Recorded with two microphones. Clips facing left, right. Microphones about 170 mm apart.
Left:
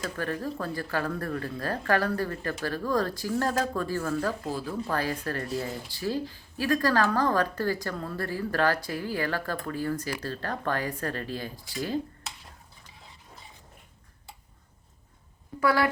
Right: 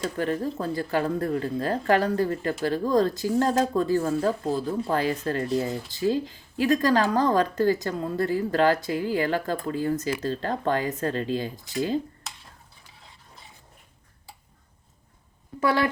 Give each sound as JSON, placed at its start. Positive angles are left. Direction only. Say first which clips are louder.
{"t": 0.0, "sound": "speech", "louder": "right 5 dB", "side_deg": -20}
{"t": 15.6, "sound": "speech", "louder": "right 1 dB", "side_deg": -25}